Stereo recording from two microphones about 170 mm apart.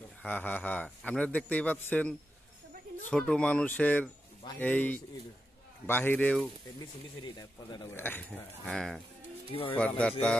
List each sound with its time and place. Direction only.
0.2 s a man's voice: 10° left (ahead or behind)
7.2 s speech: 25° left (ahead or behind)
7.9 s a man's voice: 10° left (ahead or behind)
9.5 s speech: 30° left (ahead or behind)
9.8 s a man's voice: 5° left (ahead or behind)